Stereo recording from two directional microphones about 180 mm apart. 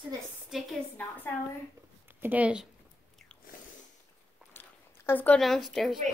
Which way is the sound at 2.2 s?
10° right (ahead or behind).